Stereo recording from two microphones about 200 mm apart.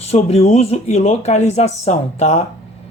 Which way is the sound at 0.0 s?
35° left (ahead or behind).